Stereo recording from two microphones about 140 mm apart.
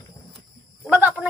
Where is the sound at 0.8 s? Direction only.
10° right (ahead or behind).